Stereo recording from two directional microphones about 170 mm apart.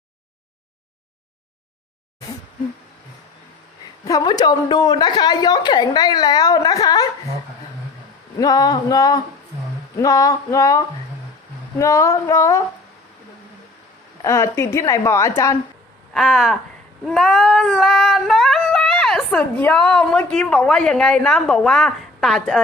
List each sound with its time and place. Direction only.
4.0 s a woman's voice: 20° left (ahead or behind)
8.4 s a woman's voice: 20° left (ahead or behind)
14.2 s a woman's voice: 15° left (ahead or behind)
16.1 s cat: centre (ahead or behind)